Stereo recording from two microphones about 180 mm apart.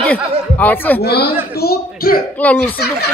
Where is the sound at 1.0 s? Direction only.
65° left (ahead or behind).